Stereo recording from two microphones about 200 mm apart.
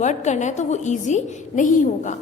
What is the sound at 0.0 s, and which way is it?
A woman's voice, 35° left (ahead or behind).